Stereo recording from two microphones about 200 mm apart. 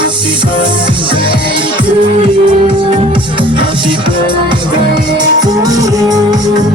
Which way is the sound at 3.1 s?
25° right (ahead or behind).